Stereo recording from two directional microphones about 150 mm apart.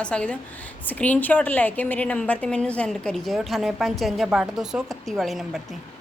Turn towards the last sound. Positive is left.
turn(degrees=0)  # may be behind; listen again after turning